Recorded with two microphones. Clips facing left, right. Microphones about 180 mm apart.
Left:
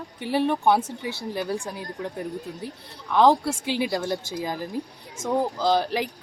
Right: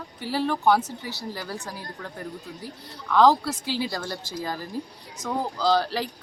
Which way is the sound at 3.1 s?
20° left (ahead or behind).